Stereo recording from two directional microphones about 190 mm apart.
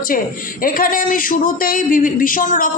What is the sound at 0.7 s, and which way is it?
A man's voice, 45° left (ahead or behind).